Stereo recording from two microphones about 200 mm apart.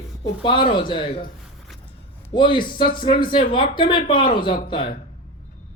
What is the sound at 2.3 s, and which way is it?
Speech, 25° left (ahead or behind).